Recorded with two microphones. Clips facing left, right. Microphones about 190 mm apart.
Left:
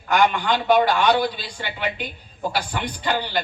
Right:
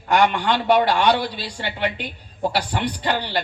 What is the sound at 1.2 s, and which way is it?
Speech, 30° right (ahead or behind).